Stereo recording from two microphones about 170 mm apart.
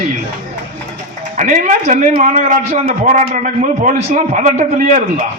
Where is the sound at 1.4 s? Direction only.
45° right (ahead or behind).